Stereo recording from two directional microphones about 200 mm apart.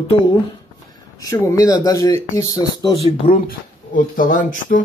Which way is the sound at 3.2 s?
40° left (ahead or behind).